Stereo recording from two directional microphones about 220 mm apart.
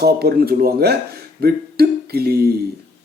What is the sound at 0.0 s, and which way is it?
Speech, 45° right (ahead or behind).